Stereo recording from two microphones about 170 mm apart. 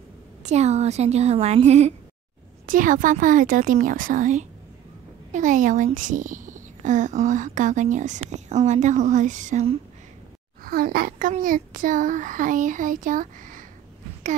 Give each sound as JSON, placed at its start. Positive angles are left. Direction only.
{"t": 0.4, "sound": "speech", "side_deg": -40}
{"t": 2.6, "sound": "speech", "side_deg": -50}
{"t": 10.6, "sound": "speech", "side_deg": -60}